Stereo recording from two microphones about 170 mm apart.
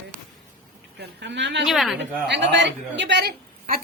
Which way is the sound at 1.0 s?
85° right.